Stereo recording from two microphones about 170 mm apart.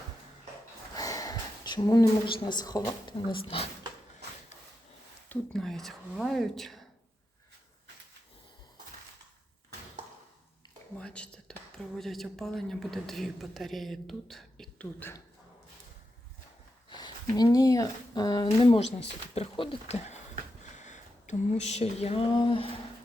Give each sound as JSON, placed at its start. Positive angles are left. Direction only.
{"t": 0.9, "sound": "a woman's voice", "side_deg": 20}
{"t": 5.3, "sound": "speech", "side_deg": 0}
{"t": 10.9, "sound": "speech", "side_deg": 5}
{"t": 16.9, "sound": "speech", "side_deg": 25}
{"t": 18.4, "sound": "speech", "side_deg": 35}
{"t": 20.7, "sound": "a sound", "side_deg": 45}